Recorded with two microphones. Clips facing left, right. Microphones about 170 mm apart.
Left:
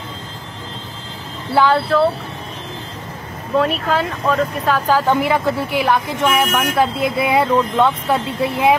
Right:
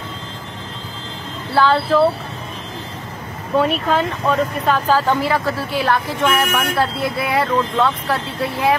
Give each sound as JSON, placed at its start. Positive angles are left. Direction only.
{"t": 1.5, "sound": "speech", "side_deg": 15}
{"t": 3.5, "sound": "speech", "side_deg": 0}
{"t": 4.8, "sound": "speech", "side_deg": 10}